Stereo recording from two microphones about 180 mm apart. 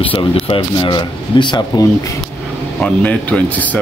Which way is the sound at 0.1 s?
30° left (ahead or behind).